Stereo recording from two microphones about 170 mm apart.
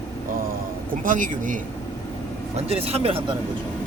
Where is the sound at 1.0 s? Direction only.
50° right (ahead or behind).